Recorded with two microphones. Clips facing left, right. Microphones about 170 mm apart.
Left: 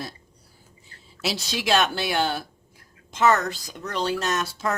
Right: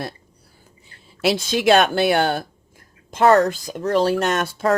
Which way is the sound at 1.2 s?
55° right (ahead or behind).